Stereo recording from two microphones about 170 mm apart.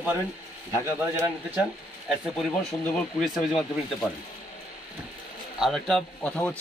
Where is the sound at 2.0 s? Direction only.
Centre (ahead or behind).